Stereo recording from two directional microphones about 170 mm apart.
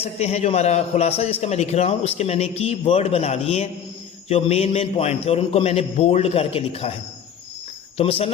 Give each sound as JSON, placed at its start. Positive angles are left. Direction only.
{"t": 0.0, "sound": "a man's voice", "side_deg": 40}
{"t": 7.9, "sound": "a man's voice", "side_deg": 35}